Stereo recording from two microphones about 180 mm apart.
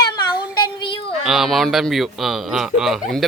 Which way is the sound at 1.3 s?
Centre (ahead or behind).